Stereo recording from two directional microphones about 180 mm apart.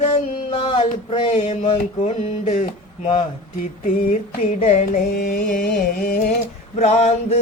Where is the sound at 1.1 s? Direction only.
30° left (ahead or behind).